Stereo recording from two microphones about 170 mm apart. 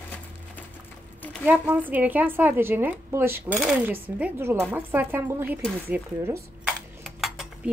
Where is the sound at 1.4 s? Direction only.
10° right (ahead or behind).